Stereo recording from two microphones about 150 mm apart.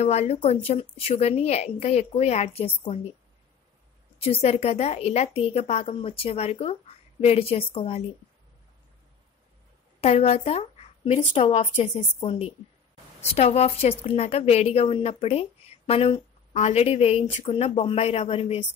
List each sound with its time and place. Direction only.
0.0 s a woman's voice: 45° left (ahead or behind)
4.2 s a woman's voice: 40° left (ahead or behind)
9.9 s a woman's voice: 45° left (ahead or behind)